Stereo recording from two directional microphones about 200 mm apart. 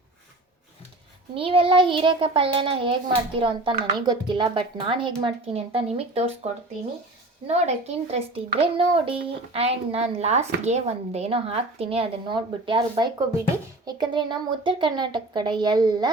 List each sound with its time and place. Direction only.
1.4 s a child's voice: 25° right (ahead or behind)